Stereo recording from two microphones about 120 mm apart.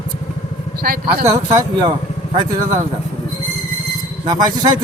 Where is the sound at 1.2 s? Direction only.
30° right (ahead or behind).